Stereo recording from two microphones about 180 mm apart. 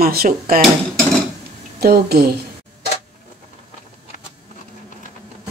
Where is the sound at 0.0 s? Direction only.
55° right (ahead or behind).